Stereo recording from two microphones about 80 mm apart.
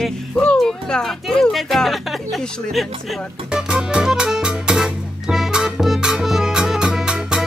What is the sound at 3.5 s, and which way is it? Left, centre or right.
Music, centre.